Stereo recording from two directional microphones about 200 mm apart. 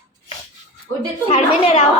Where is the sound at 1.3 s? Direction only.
30° left (ahead or behind).